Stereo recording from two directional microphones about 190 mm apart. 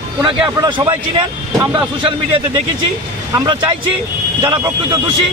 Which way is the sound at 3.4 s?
25° right (ahead or behind).